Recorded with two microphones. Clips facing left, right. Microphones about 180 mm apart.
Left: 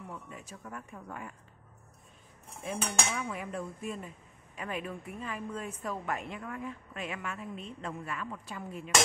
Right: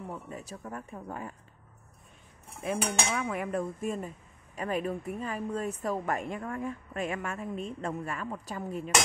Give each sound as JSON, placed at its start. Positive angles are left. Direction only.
{"t": 0.0, "sound": "speech", "side_deg": -35}
{"t": 3.2, "sound": "speech", "side_deg": -65}
{"t": 3.8, "sound": "speech", "side_deg": -45}